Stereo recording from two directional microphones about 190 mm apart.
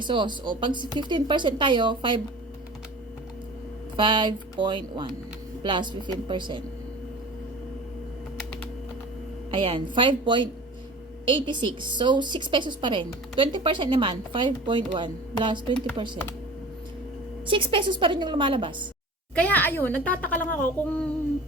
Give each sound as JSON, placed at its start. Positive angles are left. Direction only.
{"t": 0.0, "sound": "a woman's voice", "side_deg": -25}
{"t": 3.9, "sound": "a woman's voice", "side_deg": -25}
{"t": 9.5, "sound": "a woman's voice", "side_deg": -30}
{"t": 17.4, "sound": "a woman's voice", "side_deg": -25}
{"t": 19.4, "sound": "speech", "side_deg": 10}